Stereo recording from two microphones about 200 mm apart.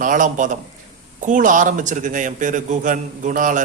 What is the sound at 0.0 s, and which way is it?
A man's voice, 40° right (ahead or behind).